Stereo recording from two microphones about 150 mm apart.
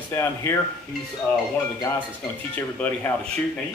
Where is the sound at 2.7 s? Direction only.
10° left (ahead or behind).